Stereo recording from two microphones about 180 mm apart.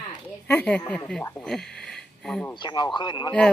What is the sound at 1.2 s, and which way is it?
Speech, 15° left (ahead or behind).